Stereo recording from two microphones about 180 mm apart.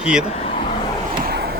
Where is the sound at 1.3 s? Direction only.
60° right (ahead or behind).